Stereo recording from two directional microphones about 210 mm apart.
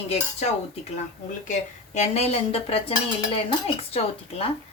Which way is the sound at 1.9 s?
30° left (ahead or behind).